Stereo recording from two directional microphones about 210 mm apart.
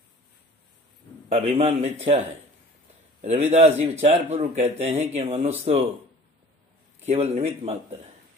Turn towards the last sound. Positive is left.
turn(degrees=-30)  # may be behind; listen again after turning